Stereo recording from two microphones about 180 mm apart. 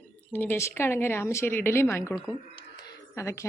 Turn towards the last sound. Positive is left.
turn(degrees=15)  # may be behind; listen again after turning